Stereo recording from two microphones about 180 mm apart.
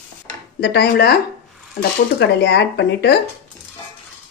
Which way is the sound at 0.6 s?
70° left (ahead or behind).